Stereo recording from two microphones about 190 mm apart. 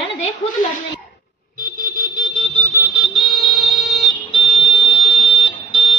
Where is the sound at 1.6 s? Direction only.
45° right (ahead or behind).